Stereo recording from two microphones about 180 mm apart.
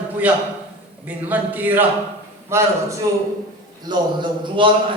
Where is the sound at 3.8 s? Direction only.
25° right (ahead or behind).